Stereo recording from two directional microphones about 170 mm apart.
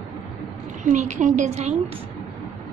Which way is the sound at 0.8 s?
45° right (ahead or behind).